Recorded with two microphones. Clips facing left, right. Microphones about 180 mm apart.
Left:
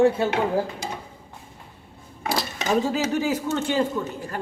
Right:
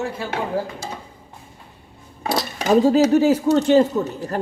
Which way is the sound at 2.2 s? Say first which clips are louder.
Right 4 dB; 35° right (ahead or behind).